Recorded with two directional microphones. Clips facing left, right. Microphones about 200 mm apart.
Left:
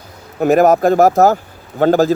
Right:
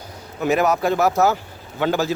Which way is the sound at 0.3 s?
50° left (ahead or behind).